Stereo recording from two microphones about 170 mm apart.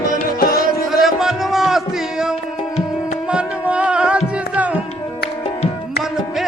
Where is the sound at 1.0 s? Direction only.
Centre (ahead or behind).